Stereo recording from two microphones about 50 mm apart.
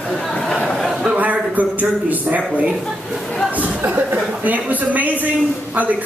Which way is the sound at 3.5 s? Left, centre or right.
Right.